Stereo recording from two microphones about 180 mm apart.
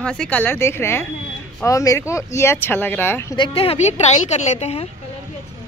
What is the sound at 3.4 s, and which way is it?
A woman's voice, 30° left (ahead or behind).